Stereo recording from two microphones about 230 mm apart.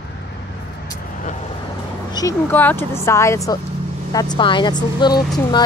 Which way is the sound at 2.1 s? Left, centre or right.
Centre.